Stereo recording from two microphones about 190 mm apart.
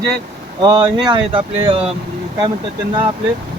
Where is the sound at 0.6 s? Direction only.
20° right (ahead or behind).